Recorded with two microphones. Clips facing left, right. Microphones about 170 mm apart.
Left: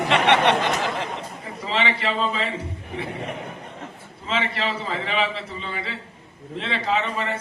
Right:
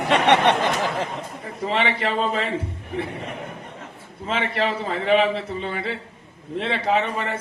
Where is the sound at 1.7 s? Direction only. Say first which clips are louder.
Right 1 dB; 50° right (ahead or behind).